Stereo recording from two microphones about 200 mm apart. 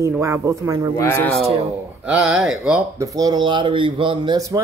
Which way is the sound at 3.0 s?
15° right (ahead or behind).